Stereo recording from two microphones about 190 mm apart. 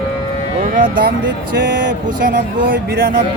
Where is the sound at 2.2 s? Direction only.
45° right (ahead or behind).